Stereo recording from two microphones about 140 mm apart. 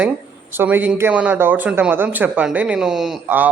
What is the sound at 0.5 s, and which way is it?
Speech, 15° right (ahead or behind).